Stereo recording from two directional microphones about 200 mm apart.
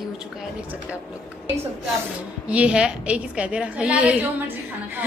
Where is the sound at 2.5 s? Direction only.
5° right (ahead or behind).